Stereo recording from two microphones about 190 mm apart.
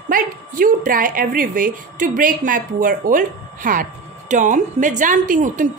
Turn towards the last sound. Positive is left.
turn(degrees=-45)  # may be behind; listen again after turning